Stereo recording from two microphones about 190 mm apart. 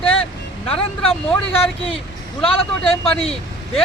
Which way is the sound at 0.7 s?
30° left (ahead or behind).